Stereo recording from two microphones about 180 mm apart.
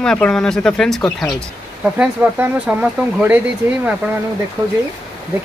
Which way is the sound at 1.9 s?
10° right (ahead or behind).